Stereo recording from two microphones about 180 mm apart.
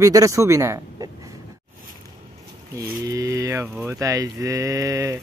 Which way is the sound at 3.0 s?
20° right (ahead or behind).